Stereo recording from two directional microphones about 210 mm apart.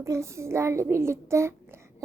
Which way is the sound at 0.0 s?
15° right (ahead or behind).